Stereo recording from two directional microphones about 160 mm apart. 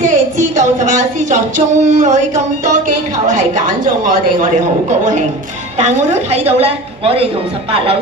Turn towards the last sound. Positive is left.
turn(degrees=-35)  # may be behind; listen again after turning